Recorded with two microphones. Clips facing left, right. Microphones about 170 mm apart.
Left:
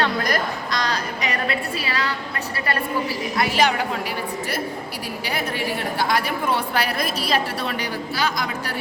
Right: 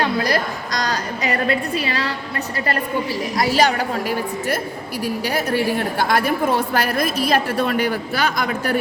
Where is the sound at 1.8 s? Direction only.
30° right (ahead or behind).